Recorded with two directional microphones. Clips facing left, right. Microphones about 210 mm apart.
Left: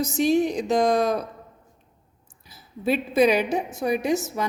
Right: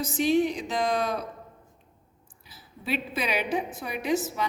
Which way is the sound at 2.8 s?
45° left (ahead or behind).